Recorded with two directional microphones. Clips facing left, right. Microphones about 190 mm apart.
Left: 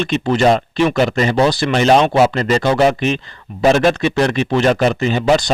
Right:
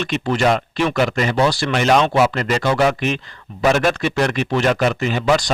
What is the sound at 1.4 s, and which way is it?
Speech, 20° left (ahead or behind).